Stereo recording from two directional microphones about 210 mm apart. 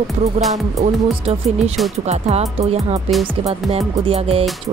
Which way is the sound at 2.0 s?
30° right (ahead or behind).